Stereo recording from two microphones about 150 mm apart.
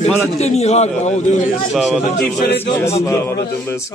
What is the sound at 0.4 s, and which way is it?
Speech, 45° left (ahead or behind).